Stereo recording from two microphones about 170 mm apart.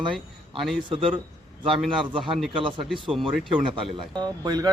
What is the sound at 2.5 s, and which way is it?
Speech, 30° right (ahead or behind).